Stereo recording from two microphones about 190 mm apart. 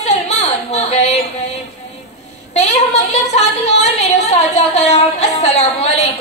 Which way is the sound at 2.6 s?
35° left (ahead or behind).